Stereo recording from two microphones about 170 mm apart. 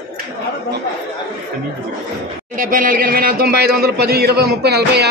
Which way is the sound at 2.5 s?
55° right (ahead or behind).